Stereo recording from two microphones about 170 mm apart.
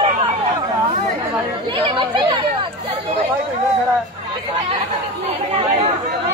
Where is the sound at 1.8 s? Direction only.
30° right (ahead or behind).